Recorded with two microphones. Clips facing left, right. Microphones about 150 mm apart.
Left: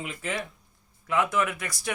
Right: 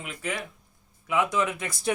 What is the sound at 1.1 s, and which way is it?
Speech, 15° right (ahead or behind).